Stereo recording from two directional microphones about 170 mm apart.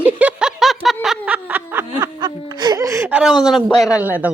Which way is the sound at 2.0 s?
25° right (ahead or behind).